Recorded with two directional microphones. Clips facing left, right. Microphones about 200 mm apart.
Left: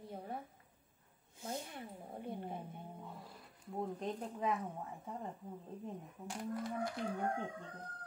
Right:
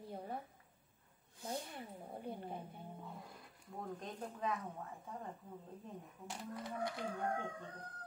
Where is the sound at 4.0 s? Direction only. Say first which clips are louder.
Left 4 dB; 20° left (ahead or behind).